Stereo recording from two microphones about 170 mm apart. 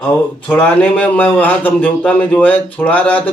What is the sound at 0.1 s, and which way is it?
Speech, 10° left (ahead or behind).